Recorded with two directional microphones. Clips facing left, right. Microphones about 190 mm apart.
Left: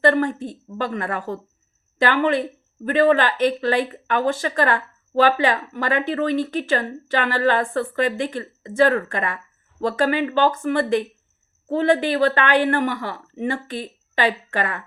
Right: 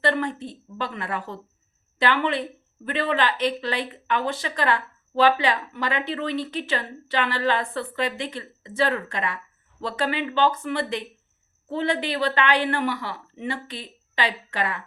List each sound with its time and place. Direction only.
0.0 s speech: 50° left (ahead or behind)